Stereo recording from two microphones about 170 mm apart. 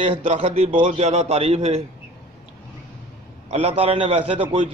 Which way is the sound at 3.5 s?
35° right (ahead or behind).